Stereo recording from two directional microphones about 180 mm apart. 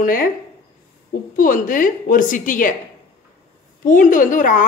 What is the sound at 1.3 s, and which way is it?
A woman's voice, 50° left (ahead or behind).